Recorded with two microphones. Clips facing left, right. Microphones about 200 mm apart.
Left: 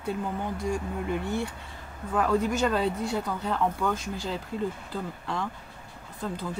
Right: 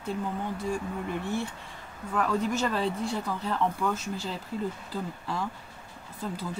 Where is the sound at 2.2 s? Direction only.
Centre (ahead or behind).